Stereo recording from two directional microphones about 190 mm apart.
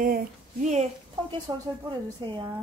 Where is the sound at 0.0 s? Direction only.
45° right (ahead or behind).